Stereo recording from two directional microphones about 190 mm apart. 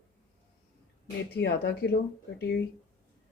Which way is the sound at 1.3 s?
60° left (ahead or behind).